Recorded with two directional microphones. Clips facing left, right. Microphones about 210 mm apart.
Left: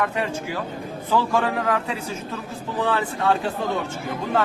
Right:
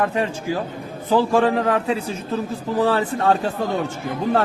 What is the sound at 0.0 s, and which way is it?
A man's voice, 30° right (ahead or behind).